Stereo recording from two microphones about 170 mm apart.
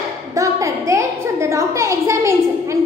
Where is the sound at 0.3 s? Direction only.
20° right (ahead or behind).